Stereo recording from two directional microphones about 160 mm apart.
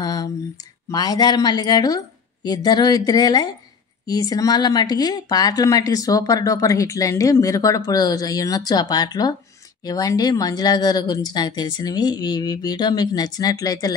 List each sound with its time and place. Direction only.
0.0 s speech: 25° left (ahead or behind)